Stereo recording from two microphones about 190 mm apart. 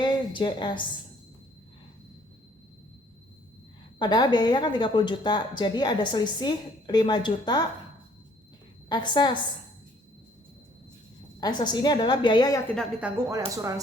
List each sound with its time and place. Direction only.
0.0 s a woman's voice: 25° left (ahead or behind)
3.9 s a woman's voice: 25° left (ahead or behind)
8.9 s a woman's voice: 25° left (ahead or behind)
11.3 s a woman's voice: 20° left (ahead or behind)
12.6 s a woman's voice: 5° left (ahead or behind)
13.0 s speech: 10° right (ahead or behind)